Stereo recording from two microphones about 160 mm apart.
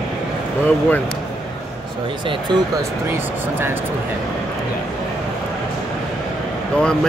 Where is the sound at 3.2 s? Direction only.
15° right (ahead or behind).